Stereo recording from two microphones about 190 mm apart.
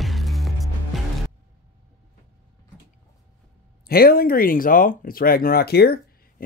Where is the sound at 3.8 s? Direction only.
50° left (ahead or behind).